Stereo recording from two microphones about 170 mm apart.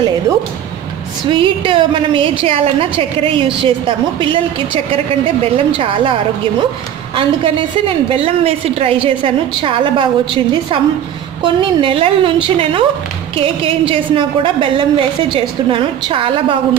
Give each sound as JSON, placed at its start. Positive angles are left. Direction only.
{"t": 1.3, "sound": "a woman's voice", "side_deg": -30}
{"t": 5.7, "sound": "a woman's voice", "side_deg": -30}
{"t": 7.2, "sound": "a woman's voice", "side_deg": -30}